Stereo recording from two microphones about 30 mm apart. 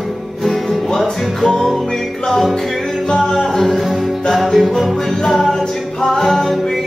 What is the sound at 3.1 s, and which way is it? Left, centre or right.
Music, left.